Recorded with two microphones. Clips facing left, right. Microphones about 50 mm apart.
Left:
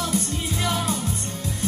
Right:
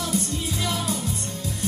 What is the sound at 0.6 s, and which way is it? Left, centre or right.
Music, left.